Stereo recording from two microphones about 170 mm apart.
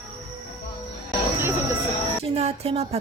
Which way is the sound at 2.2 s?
35° right (ahead or behind).